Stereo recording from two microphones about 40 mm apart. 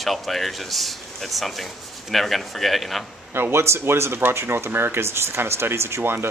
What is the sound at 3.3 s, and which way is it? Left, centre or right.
Speech, right.